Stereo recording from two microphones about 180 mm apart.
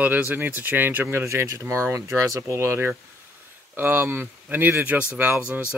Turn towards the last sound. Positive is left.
turn(degrees=-10)  # may be behind; listen again after turning